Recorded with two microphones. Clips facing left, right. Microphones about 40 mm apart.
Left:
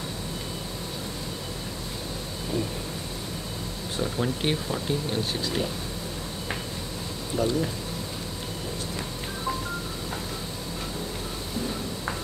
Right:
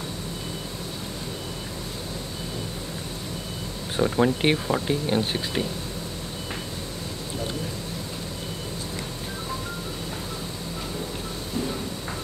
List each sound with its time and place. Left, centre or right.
3.9 s speech: right